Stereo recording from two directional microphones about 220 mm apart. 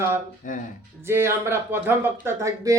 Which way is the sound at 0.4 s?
35° left (ahead or behind).